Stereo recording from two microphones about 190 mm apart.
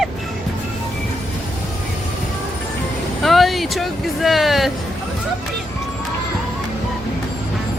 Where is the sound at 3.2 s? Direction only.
Centre (ahead or behind).